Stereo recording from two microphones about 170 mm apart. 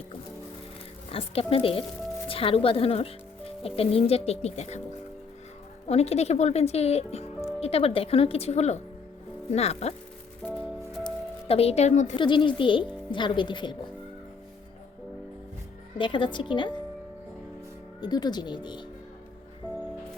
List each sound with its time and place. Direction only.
1.1 s speech: 35° left (ahead or behind)
5.9 s speech: 40° left (ahead or behind)
10.6 s music: 35° left (ahead or behind)
12.1 s speech: 30° left (ahead or behind)
16.0 s speech: 30° left (ahead or behind)
18.0 s speech: 25° left (ahead or behind)
19.6 s music: 10° left (ahead or behind)